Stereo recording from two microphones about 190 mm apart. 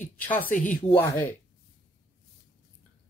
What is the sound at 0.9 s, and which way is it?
Speech, 10° left (ahead or behind).